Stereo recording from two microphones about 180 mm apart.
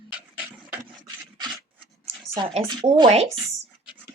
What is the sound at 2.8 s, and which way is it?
Speech, 25° right (ahead or behind).